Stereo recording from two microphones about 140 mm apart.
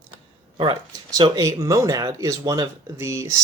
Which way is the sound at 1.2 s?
25° right (ahead or behind).